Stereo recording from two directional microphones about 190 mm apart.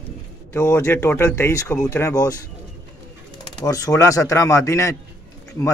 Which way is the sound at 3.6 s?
20° left (ahead or behind).